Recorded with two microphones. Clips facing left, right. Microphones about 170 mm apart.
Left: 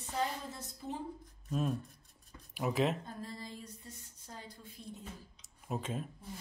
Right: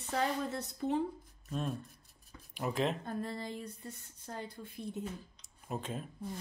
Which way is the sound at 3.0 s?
60° right (ahead or behind).